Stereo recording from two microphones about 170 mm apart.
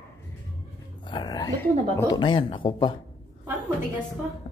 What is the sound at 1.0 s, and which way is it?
Dog, 25° left (ahead or behind).